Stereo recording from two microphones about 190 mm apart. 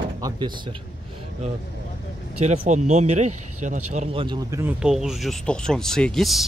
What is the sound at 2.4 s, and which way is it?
Speech, 40° right (ahead or behind).